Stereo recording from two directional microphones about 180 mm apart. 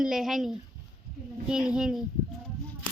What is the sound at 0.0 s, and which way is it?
Speech, 5° right (ahead or behind).